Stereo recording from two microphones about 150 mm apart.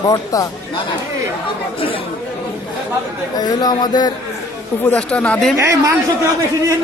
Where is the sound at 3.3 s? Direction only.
25° left (ahead or behind).